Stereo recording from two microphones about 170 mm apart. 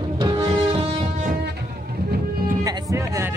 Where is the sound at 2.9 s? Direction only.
15° right (ahead or behind).